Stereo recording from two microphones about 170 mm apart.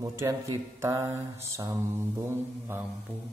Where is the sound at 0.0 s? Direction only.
15° right (ahead or behind).